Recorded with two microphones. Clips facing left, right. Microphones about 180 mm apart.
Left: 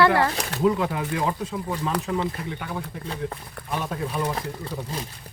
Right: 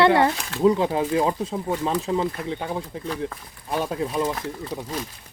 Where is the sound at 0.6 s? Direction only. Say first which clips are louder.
Right 4 dB; 30° right (ahead or behind).